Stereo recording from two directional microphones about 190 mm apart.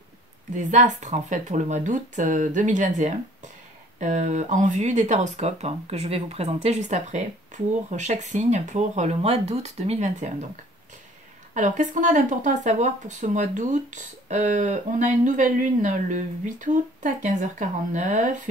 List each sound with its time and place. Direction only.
0.6 s speech: 40° right (ahead or behind)